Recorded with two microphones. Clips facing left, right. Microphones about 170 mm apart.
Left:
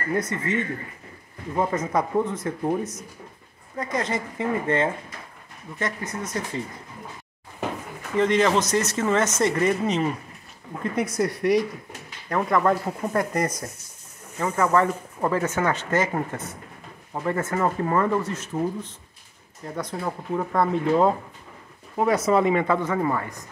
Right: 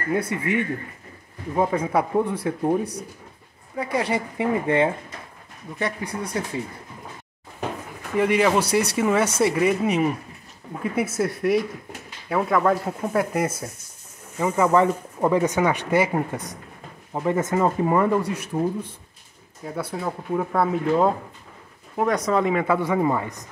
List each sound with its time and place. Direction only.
0.1 s speech: 10° right (ahead or behind)
2.8 s speech: 35° right (ahead or behind)
3.7 s speech: 10° right (ahead or behind)
8.2 s speech: 10° right (ahead or behind)
21.9 s speech: 5° left (ahead or behind); by 23.4 s 20° right (ahead or behind)